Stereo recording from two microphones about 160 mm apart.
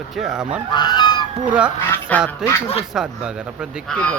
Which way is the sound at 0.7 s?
25° left (ahead or behind).